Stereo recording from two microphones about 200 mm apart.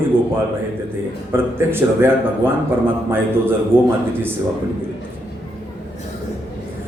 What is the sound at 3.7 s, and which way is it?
Speech, 10° right (ahead or behind).